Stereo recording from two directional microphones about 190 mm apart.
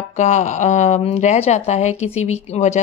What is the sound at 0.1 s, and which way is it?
Speech, 40° left (ahead or behind).